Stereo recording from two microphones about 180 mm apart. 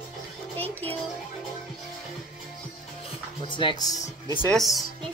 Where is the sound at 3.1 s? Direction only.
30° left (ahead or behind).